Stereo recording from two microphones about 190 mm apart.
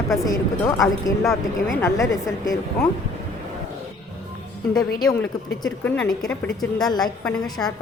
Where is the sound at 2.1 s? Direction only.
15° left (ahead or behind).